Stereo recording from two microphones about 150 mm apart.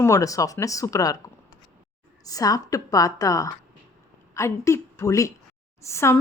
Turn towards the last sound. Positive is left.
turn(degrees=20)  # may be behind; listen again after turning